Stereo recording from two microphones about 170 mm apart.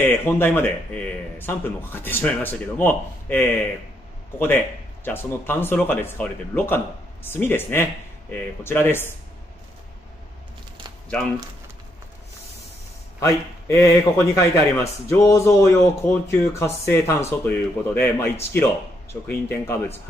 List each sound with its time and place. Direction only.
0.0 s speech: 10° left (ahead or behind)
11.1 s speech: 5° left (ahead or behind)
13.2 s a man's voice: 20° left (ahead or behind)